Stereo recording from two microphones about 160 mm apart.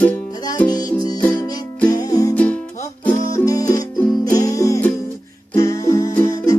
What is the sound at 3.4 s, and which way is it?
Music, 20° left (ahead or behind).